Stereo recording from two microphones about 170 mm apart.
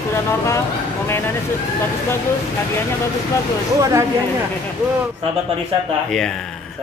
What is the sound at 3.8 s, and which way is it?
Speech, 20° right (ahead or behind).